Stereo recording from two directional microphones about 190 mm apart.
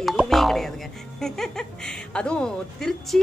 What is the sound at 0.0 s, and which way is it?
Music, centre (ahead or behind).